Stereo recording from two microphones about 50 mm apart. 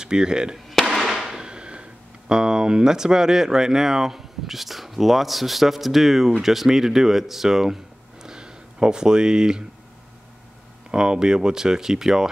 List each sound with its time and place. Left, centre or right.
0.0 s speech: centre
0.9 s firecracker: centre
1.4 s speech: centre
10.9 s speech: centre